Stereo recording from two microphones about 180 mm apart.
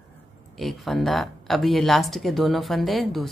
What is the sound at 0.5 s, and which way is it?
Speech, centre (ahead or behind).